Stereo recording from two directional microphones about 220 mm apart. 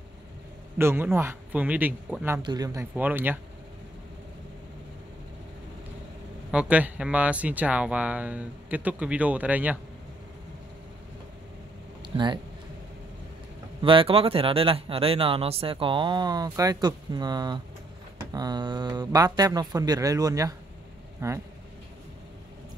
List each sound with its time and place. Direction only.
0.7 s speech: 10° right (ahead or behind)
6.5 s speech: 5° right (ahead or behind)
12.0 s a sound: 20° right (ahead or behind)
13.7 s speech: 25° right (ahead or behind)